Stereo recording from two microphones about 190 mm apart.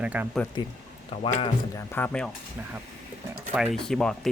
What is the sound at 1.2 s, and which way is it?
Speech, 30° left (ahead or behind).